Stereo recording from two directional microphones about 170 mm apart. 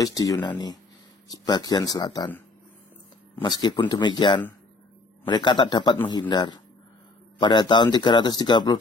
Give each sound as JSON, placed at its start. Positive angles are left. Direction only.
{"t": 0.0, "sound": "speech", "side_deg": 20}
{"t": 3.4, "sound": "speech", "side_deg": 25}